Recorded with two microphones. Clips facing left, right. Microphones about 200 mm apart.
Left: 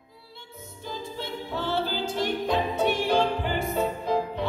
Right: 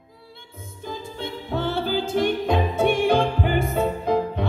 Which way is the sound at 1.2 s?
50° right (ahead or behind).